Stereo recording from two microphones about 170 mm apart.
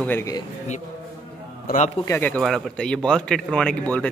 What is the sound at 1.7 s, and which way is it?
Speech, 65° left (ahead or behind).